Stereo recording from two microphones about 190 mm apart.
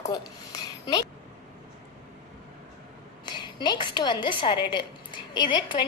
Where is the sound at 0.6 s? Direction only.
20° left (ahead or behind).